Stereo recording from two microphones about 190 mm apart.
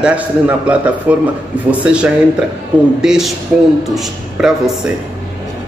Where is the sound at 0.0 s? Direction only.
5° right (ahead or behind).